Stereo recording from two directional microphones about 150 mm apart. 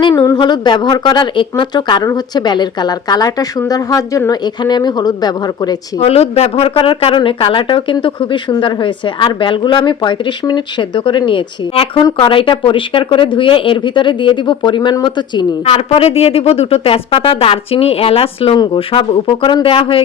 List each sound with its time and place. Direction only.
0.1 s speech: 20° left (ahead or behind)
0.3 s speech: 30° left (ahead or behind)
6.0 s speech: 40° left (ahead or behind)
15.6 s speech: 40° left (ahead or behind)